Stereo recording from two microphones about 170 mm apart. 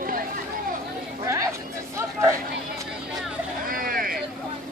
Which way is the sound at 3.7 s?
55° right (ahead or behind).